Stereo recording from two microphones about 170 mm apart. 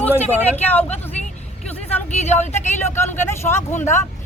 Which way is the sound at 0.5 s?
10° left (ahead or behind).